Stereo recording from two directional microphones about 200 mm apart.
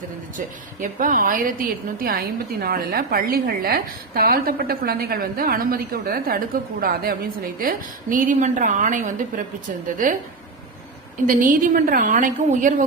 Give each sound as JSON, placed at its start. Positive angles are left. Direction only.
{"t": 0.3, "sound": "a woman's voice", "side_deg": -40}
{"t": 11.3, "sound": "a woman's voice", "side_deg": -40}